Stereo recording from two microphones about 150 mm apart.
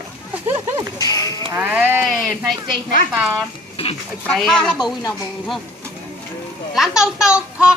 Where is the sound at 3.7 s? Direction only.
40° left (ahead or behind).